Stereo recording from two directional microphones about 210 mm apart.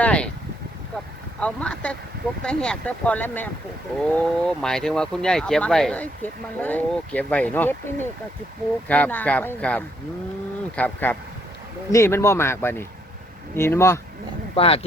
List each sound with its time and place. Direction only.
0.0 s vehicle: 5° left (ahead or behind)
1.4 s a sound: 5° left (ahead or behind)
2.4 s speech: 5° left (ahead or behind)
8.9 s speech: 10° left (ahead or behind)
14.5 s speech: 25° left (ahead or behind)